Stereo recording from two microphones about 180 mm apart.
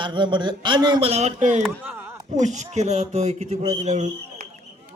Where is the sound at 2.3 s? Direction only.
40° right (ahead or behind).